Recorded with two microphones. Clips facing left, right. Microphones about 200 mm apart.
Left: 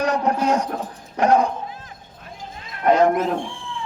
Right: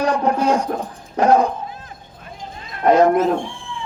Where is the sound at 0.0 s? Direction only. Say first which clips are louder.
Right 2 dB; 30° right (ahead or behind).